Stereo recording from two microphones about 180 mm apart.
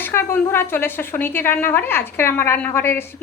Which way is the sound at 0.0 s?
15° left (ahead or behind).